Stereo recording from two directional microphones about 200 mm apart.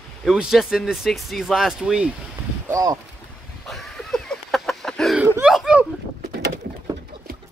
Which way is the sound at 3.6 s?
Centre (ahead or behind).